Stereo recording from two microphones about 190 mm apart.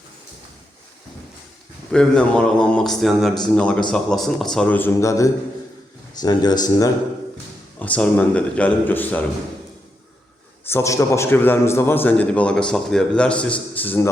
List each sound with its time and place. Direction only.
1.9 s a man's voice: 5° left (ahead or behind); by 6.9 s 20° left (ahead or behind)
7.8 s a man's voice: 5° left (ahead or behind)
10.7 s a man's voice: 15° left (ahead or behind)